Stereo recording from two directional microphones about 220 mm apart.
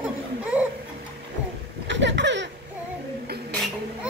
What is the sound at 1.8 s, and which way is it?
Baby laughter, 55° right (ahead or behind).